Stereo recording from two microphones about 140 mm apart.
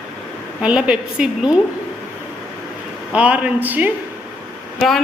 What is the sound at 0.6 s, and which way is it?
Speech, 10° right (ahead or behind).